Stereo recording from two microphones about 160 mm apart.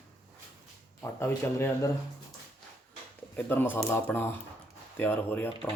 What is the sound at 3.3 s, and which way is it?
Speech, 10° left (ahead or behind).